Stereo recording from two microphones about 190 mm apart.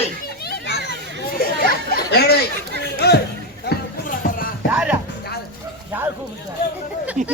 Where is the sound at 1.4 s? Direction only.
55° left (ahead or behind).